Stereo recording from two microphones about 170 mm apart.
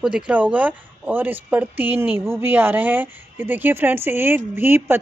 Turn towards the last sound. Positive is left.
turn(degrees=-15)  # may be behind; listen again after turning